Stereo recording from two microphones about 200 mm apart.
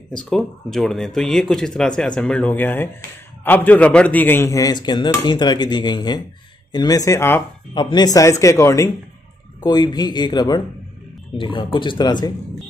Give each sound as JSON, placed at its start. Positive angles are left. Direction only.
{"t": 0.1, "sound": "speech", "side_deg": 5}